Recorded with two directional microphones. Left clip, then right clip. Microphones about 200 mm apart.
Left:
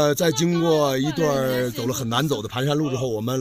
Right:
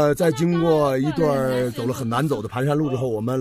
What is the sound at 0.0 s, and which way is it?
Speech, centre (ahead or behind).